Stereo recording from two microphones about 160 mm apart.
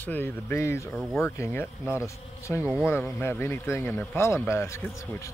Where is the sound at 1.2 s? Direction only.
15° left (ahead or behind).